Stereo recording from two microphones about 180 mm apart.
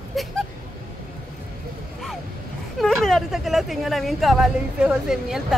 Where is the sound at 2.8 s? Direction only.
Centre (ahead or behind).